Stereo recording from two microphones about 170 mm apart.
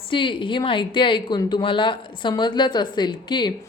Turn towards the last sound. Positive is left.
turn(degrees=25)  # may be behind; listen again after turning